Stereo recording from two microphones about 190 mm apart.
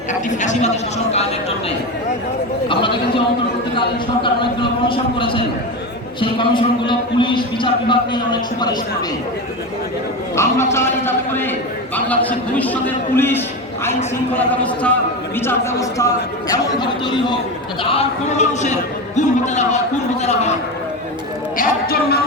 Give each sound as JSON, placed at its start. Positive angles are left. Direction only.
{"t": 0.1, "sound": "a man's voice", "side_deg": 40}
{"t": 2.6, "sound": "a man's voice", "side_deg": 25}
{"t": 10.3, "sound": "a man's voice", "side_deg": 15}
{"t": 17.8, "sound": "a man's voice", "side_deg": 35}
{"t": 21.6, "sound": "speech", "side_deg": 55}